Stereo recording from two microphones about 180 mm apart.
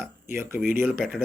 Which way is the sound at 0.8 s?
Centre (ahead or behind).